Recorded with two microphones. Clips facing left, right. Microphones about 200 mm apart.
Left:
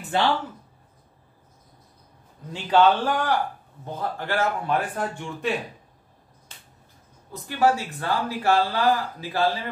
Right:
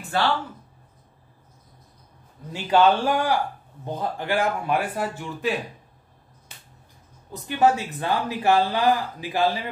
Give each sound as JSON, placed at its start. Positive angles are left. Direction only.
{"t": 0.1, "sound": "speech", "side_deg": 20}
{"t": 2.5, "sound": "speech", "side_deg": -10}
{"t": 7.4, "sound": "speech", "side_deg": -20}